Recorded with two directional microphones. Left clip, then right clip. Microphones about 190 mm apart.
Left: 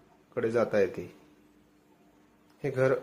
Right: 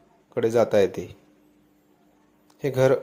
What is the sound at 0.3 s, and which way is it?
Speech, 25° right (ahead or behind).